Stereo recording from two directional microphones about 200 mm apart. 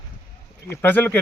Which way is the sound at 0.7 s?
10° left (ahead or behind).